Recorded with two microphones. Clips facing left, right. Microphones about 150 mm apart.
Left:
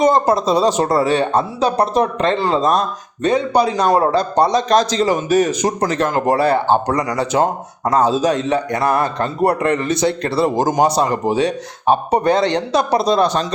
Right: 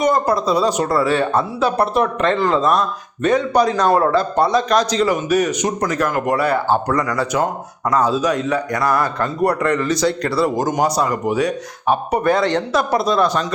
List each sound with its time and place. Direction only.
0.0 s a man's voice: 25° left (ahead or behind)